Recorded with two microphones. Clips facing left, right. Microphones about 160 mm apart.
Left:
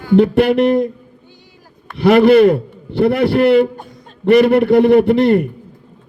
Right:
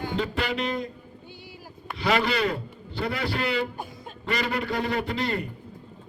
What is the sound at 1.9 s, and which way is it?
A man's voice, 60° left (ahead or behind).